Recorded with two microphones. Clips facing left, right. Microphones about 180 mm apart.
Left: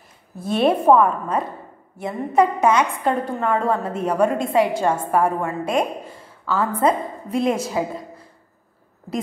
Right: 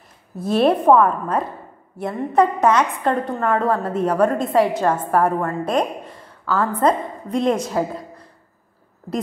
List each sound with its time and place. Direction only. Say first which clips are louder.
0.4 s a woman's voice: right 2 dB; centre (ahead or behind)